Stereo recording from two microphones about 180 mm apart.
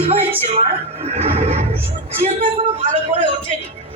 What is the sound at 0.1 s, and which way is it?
Speech, 30° right (ahead or behind).